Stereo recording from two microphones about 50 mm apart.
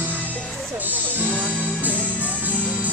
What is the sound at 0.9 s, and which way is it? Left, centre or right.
Music, right.